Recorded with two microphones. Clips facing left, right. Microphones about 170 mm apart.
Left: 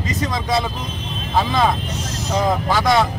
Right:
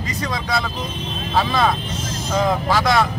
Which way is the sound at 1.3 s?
20° left (ahead or behind).